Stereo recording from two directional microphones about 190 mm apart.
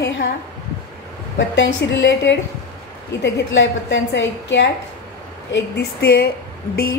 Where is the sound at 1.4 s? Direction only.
75° left (ahead or behind).